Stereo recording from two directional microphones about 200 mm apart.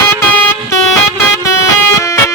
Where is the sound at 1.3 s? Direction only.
15° left (ahead or behind).